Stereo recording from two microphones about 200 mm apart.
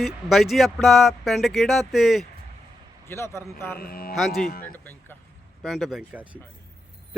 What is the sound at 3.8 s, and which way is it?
Speech, 50° left (ahead or behind).